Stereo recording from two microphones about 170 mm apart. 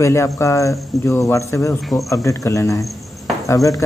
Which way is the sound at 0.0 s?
15° left (ahead or behind).